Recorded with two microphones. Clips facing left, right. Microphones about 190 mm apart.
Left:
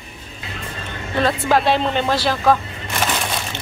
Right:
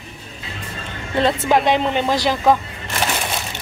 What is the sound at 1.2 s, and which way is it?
Speech, 20° right (ahead or behind).